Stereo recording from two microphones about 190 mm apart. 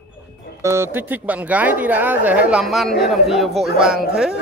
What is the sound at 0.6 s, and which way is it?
A woman's voice, 15° right (ahead or behind).